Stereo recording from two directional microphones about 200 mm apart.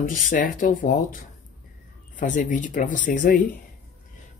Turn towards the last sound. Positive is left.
turn(degrees=40)  # may be behind; listen again after turning